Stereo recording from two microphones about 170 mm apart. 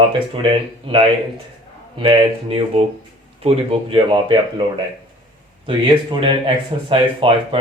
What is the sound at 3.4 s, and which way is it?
Speech, 30° right (ahead or behind).